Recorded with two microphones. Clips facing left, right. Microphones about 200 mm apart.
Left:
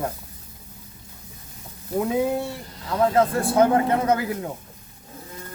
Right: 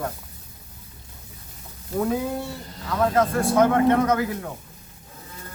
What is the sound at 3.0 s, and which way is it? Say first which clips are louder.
Speech: left 1 dB; 30° left (ahead or behind).